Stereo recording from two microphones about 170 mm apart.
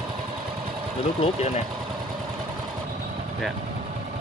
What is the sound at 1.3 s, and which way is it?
Speech, 40° left (ahead or behind).